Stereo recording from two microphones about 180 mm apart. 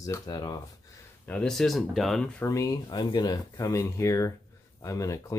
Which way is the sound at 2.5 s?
20° left (ahead or behind).